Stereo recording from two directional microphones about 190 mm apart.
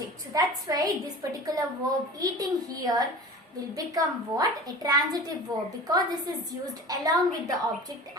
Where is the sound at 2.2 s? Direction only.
20° right (ahead or behind).